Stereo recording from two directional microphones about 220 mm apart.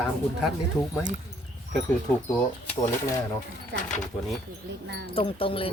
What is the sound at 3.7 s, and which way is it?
Speech, 50° right (ahead or behind).